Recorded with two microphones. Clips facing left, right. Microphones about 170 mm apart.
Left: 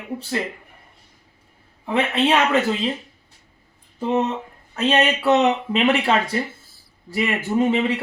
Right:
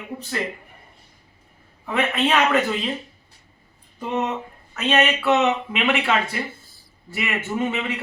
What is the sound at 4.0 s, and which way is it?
A man's voice, 25° left (ahead or behind).